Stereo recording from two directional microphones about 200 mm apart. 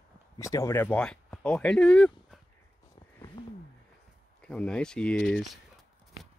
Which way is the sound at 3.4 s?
25° left (ahead or behind).